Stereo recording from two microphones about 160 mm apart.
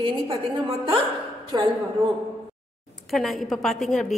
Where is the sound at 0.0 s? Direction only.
35° right (ahead or behind).